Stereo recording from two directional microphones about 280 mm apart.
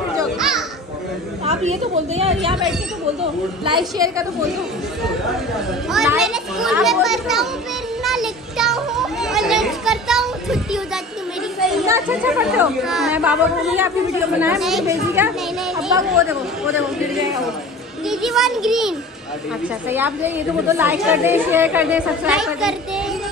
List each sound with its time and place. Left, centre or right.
0.2 s children playing: centre
1.4 s a woman's voice: right
5.9 s a child's voice: centre
8.0 s children playing: centre
11.8 s a woman's voice: centre
18.2 s a woman's voice: centre